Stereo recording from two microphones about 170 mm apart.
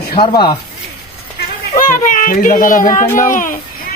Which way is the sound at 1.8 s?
50° left (ahead or behind).